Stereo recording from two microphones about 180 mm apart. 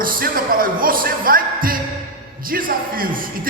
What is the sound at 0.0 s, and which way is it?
Music, 55° right (ahead or behind).